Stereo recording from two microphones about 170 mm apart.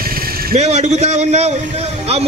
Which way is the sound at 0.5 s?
40° right (ahead or behind).